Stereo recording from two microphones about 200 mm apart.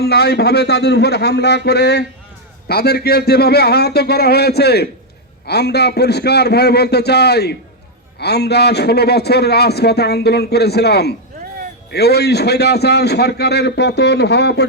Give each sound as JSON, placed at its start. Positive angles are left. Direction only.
{"t": 0.0, "sound": "a man's voice", "side_deg": 55}